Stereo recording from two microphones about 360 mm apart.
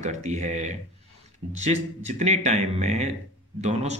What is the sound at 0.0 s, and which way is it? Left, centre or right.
Speech, centre.